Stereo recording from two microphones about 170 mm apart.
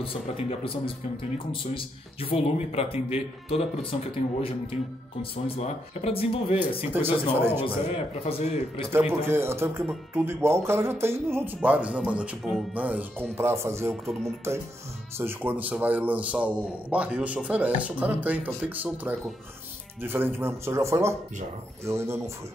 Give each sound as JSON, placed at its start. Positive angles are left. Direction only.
{"t": 0.0, "sound": "speech", "side_deg": 35}
{"t": 6.9, "sound": "a man's voice", "side_deg": -10}
{"t": 7.6, "sound": "speech", "side_deg": 35}
{"t": 8.9, "sound": "a man's voice", "side_deg": -15}
{"t": 15.1, "sound": "a man's voice", "side_deg": -10}